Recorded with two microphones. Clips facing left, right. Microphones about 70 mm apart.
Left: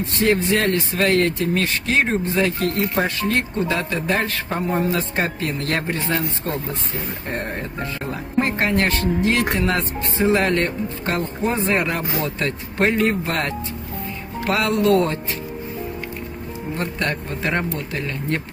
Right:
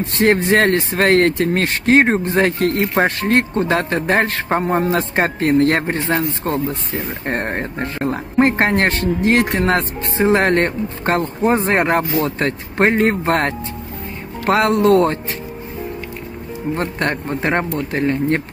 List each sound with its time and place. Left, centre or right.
0.0 s speech: right
16.7 s speech: right